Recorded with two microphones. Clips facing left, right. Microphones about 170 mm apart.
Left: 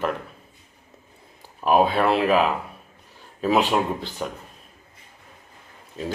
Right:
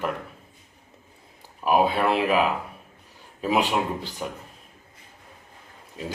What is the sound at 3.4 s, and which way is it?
Speech, 10° right (ahead or behind).